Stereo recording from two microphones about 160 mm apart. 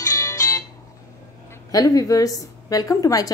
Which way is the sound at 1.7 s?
20° left (ahead or behind).